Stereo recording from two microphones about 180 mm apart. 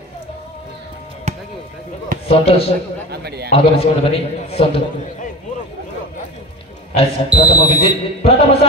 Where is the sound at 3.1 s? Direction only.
65° right (ahead or behind).